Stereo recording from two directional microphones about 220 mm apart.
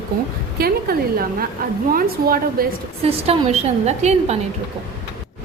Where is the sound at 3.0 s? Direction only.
30° right (ahead or behind).